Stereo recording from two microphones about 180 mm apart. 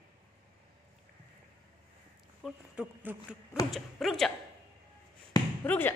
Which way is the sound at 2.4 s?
5° right (ahead or behind).